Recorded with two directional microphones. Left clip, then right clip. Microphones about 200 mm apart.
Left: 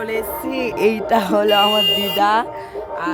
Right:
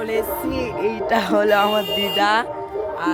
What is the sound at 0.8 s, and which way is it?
Speech, 40° left (ahead or behind).